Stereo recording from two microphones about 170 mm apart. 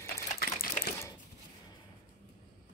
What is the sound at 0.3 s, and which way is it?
Sewing machine, 60° left (ahead or behind).